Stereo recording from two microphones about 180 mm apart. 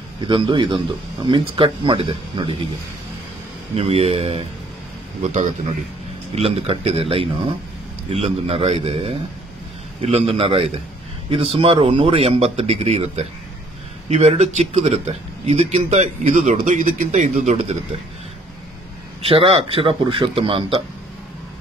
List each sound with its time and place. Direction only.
0.3 s speech: 25° right (ahead or behind)
3.7 s a man's voice: 35° right (ahead or behind)
19.2 s a man's voice: 30° right (ahead or behind)